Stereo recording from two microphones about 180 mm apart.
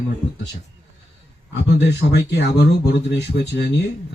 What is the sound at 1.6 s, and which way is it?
Speech, 70° left (ahead or behind).